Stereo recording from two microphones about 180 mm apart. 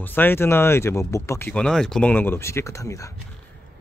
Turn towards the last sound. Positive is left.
turn(degrees=15)  # may be behind; listen again after turning